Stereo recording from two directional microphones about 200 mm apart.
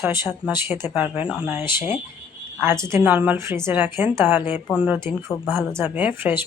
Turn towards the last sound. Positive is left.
turn(degrees=-10)  # may be behind; listen again after turning